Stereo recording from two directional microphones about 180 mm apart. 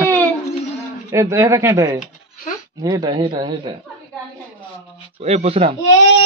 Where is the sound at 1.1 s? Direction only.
15° right (ahead or behind).